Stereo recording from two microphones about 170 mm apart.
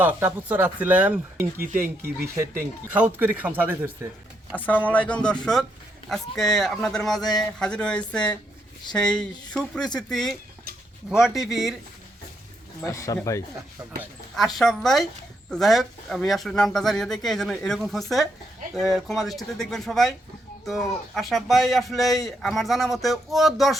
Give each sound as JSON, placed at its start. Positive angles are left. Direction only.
{"t": 0.0, "sound": "speech", "side_deg": -10}
{"t": 1.5, "sound": "speech", "side_deg": -55}
{"t": 1.8, "sound": "speech", "side_deg": -15}
{"t": 4.5, "sound": "speech", "side_deg": 10}
{"t": 12.8, "sound": "speech", "side_deg": 20}
{"t": 14.3, "sound": "speech", "side_deg": 0}